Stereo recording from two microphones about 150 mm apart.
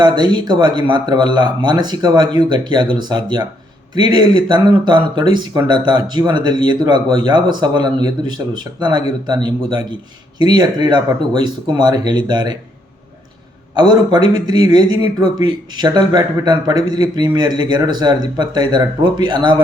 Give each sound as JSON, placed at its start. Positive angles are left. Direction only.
{"t": 0.0, "sound": "speech", "side_deg": -30}
{"t": 13.7, "sound": "speech", "side_deg": -30}